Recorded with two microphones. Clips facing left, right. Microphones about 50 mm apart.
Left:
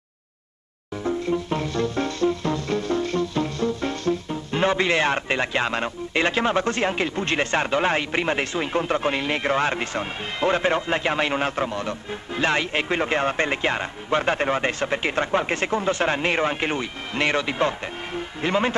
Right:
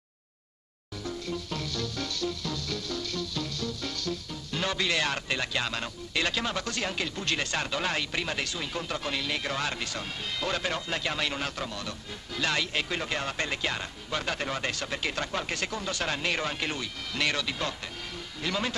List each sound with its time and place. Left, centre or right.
1.0 s music: left